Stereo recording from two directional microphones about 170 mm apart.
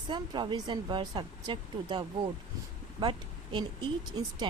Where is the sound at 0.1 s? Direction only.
25° right (ahead or behind).